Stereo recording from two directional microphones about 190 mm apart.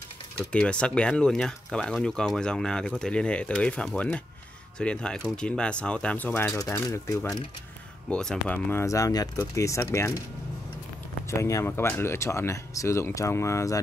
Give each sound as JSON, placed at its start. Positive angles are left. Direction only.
{"t": 0.5, "sound": "speech", "side_deg": 5}
{"t": 8.1, "sound": "speech", "side_deg": 5}
{"t": 11.2, "sound": "speech", "side_deg": 15}